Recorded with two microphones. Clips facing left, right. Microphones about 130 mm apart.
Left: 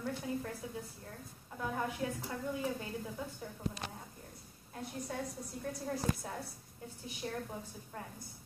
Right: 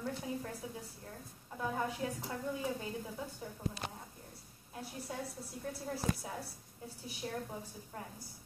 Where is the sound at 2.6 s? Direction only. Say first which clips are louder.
Left 1 dB; 15° right (ahead or behind).